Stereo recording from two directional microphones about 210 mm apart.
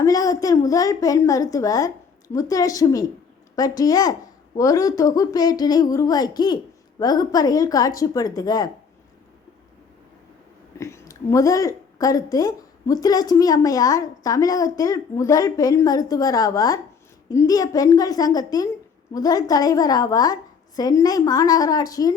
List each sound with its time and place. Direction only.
0.0 s a woman's voice: 15° left (ahead or behind)
10.8 s a woman's voice: 15° left (ahead or behind)